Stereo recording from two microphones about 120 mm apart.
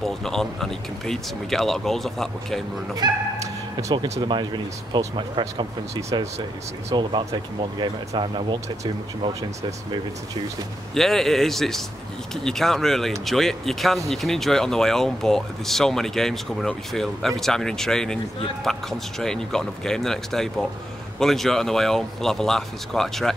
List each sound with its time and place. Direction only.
0.0 s speech: 5° left (ahead or behind)
3.0 s speech: 35° right (ahead or behind)
4.2 s speech: 40° right (ahead or behind)
5.4 s speech: 25° right (ahead or behind)
6.9 s speech: 40° right (ahead or behind)
11.0 s speech: 5° left (ahead or behind)